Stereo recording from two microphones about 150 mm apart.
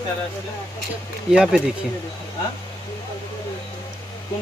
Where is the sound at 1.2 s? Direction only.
5° right (ahead or behind).